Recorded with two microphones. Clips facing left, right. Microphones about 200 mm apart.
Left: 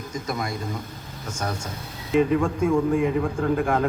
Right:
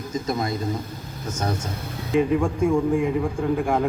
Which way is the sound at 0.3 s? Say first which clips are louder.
Right 4 dB; 25° right (ahead or behind).